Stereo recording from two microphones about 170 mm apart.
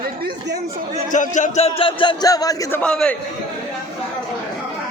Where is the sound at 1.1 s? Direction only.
50° left (ahead or behind).